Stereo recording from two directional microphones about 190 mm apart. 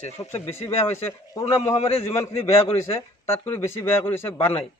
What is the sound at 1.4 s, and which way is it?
Speech, 35° left (ahead or behind).